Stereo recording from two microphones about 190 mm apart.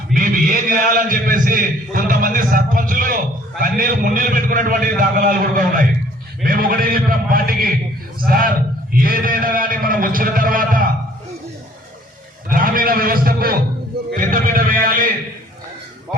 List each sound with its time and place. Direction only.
0.1 s a man's voice: 45° right (ahead or behind)
12.5 s a man's voice: 50° right (ahead or behind)
14.1 s a sound: 50° right (ahead or behind)